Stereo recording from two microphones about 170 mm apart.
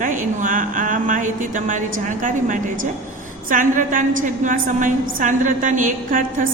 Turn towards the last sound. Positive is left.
turn(degrees=-50)  # may be behind; listen again after turning